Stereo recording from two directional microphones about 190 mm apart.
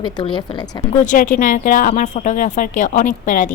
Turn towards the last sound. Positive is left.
turn(degrees=40)  # may be behind; listen again after turning